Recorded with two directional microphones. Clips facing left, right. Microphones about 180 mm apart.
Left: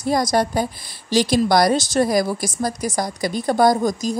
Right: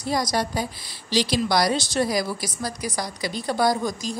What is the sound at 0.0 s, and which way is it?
A woman's voice, 50° left (ahead or behind).